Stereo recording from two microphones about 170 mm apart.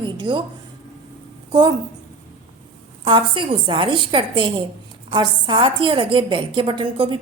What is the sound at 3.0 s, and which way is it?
A woman's voice, 25° right (ahead or behind).